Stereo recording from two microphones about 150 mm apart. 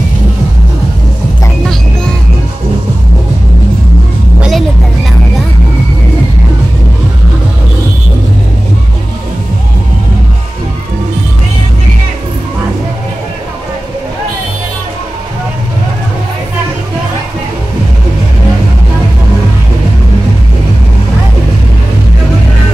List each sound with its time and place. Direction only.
4.4 s vehicle: centre (ahead or behind)